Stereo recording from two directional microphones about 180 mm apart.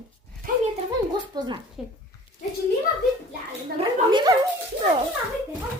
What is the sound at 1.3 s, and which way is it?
Speech, 20° right (ahead or behind).